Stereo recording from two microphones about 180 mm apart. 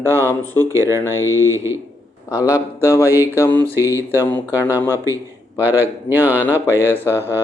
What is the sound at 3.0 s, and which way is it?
A man's voice, 15° right (ahead or behind).